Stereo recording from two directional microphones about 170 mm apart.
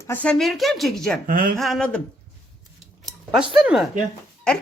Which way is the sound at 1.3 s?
55° right (ahead or behind).